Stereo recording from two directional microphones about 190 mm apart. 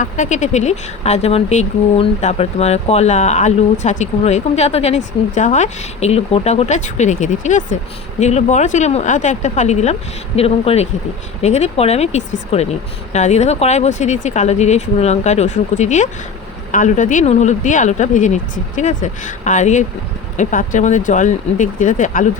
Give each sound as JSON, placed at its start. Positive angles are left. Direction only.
{"t": 0.0, "sound": "speech", "side_deg": 40}